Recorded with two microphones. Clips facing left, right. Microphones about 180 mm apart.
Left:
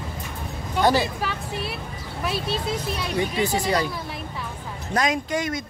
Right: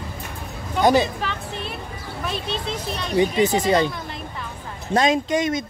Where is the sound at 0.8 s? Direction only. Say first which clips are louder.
Right 3 dB; 20° right (ahead or behind).